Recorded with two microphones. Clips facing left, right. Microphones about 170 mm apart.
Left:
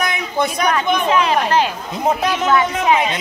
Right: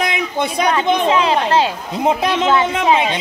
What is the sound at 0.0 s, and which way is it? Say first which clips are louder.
Speech: even; 25° right (ahead or behind).